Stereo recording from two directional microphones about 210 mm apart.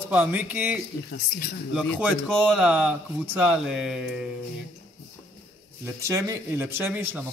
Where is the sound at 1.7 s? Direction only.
5° right (ahead or behind).